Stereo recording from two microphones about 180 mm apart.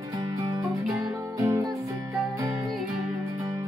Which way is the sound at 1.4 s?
20° right (ahead or behind).